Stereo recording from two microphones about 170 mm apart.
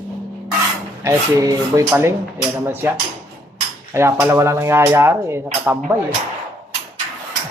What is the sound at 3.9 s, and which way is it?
Speech, 15° right (ahead or behind).